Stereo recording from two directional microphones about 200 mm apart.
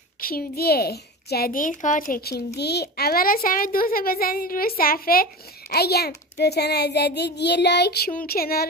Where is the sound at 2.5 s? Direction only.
55° left (ahead or behind).